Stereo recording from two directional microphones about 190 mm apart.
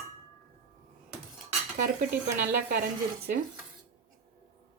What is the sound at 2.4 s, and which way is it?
Speech, 55° right (ahead or behind).